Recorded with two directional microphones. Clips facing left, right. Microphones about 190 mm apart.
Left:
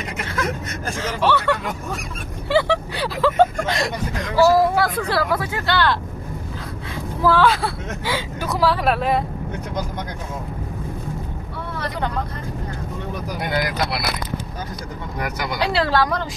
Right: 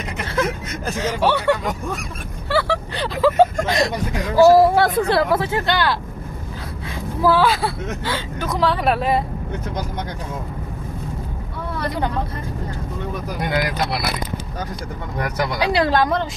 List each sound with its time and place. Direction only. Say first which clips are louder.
0.9 s speech: right 1 dB; 15° right (ahead or behind)
2.5 s vehicle: left 2 dB; 15° left (ahead or behind)
3.2 s vehicle: right 2 dB; 5° right (ahead or behind)
3.7 s speech: right 3 dB; 15° right (ahead or behind)
7.2 s speech: even; 10° right (ahead or behind)
8.0 s speech: left 3 dB; 10° left (ahead or behind)
15.6 s speech: right 1 dB; 15° right (ahead or behind)